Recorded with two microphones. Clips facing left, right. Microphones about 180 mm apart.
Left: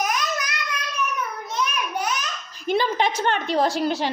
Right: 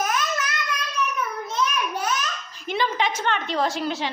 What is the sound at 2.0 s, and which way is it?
Baby laughter, 15° left (ahead or behind).